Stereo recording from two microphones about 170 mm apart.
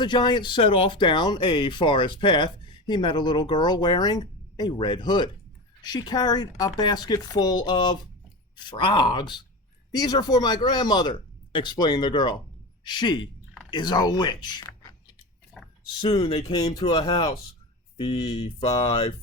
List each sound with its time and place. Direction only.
0.0 s a man's voice: 25° left (ahead or behind)
16.0 s speech: 35° left (ahead or behind)
16.5 s speech: 25° left (ahead or behind)